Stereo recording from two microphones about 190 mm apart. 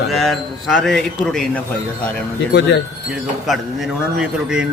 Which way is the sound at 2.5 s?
65° left (ahead or behind).